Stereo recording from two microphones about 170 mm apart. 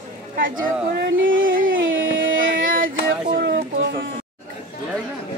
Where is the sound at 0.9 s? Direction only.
65° right (ahead or behind).